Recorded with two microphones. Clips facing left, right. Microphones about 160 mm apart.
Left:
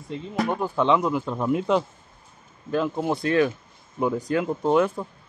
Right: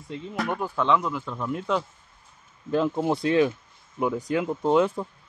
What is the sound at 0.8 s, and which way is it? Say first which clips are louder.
Speech: left 3 dB; 30° left (ahead or behind).